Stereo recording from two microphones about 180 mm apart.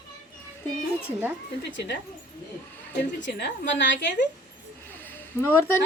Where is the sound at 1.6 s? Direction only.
70° left (ahead or behind).